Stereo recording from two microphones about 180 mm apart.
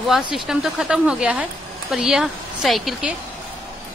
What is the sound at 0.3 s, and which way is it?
Speech, centre (ahead or behind).